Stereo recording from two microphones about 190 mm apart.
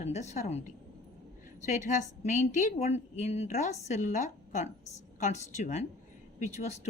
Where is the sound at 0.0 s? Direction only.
35° left (ahead or behind).